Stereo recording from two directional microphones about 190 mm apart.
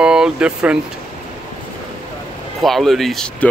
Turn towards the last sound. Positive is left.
turn(degrees=0)  # may be behind; listen again after turning